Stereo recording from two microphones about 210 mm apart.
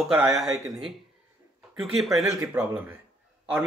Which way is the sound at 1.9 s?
Centre (ahead or behind).